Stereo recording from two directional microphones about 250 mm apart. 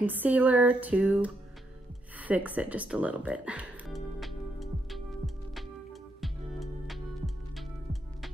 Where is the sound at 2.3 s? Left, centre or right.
Centre.